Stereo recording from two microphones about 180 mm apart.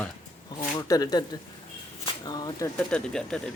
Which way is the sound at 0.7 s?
25° left (ahead or behind).